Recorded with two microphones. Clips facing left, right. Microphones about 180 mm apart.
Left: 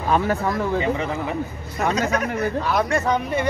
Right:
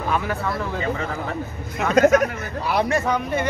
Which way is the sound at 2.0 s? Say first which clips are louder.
Right 14 dB; 50° right (ahead or behind).